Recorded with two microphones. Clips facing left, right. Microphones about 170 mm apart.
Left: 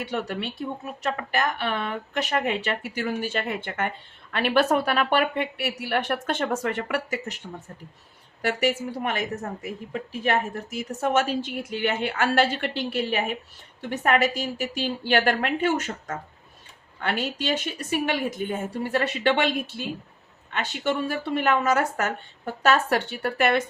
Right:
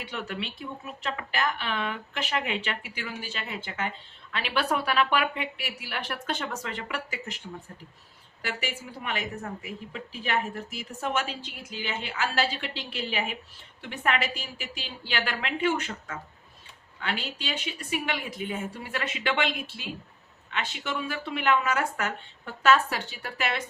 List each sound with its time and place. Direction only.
0.1 s a woman's voice: 40° left (ahead or behind)
8.4 s a woman's voice: 50° left (ahead or behind)
20.5 s a woman's voice: 40° left (ahead or behind)